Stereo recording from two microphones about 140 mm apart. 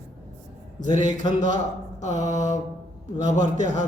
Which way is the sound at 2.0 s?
60° right (ahead or behind).